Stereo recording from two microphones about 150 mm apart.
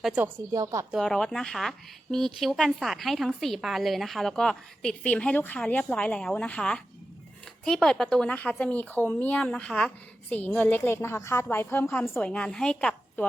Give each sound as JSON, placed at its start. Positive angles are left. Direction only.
{"t": 0.0, "sound": "a woman's voice", "side_deg": -5}
{"t": 0.3, "sound": "speech", "side_deg": -20}
{"t": 0.9, "sound": "a woman's voice", "side_deg": 0}